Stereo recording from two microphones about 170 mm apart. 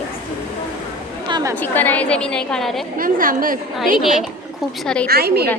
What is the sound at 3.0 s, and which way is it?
Speech, 55° right (ahead or behind).